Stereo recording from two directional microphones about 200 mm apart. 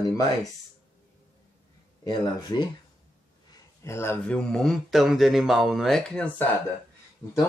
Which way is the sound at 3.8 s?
15° left (ahead or behind).